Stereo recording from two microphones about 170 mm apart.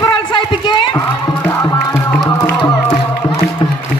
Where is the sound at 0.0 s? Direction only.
25° left (ahead or behind).